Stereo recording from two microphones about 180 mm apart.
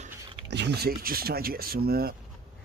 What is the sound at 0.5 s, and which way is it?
Speech, 70° right (ahead or behind).